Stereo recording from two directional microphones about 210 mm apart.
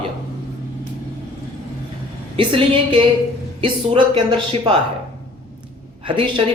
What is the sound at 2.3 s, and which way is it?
A man's voice, 25° right (ahead or behind).